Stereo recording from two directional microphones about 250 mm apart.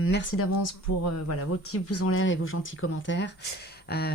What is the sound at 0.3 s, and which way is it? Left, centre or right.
Speech, left.